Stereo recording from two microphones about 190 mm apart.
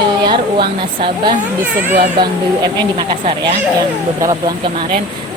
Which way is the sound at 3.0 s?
30° right (ahead or behind).